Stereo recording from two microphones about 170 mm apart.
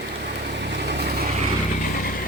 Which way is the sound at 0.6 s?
75° right (ahead or behind).